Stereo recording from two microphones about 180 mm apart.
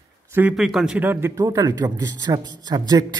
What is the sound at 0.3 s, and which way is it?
A man's voice, 10° right (ahead or behind).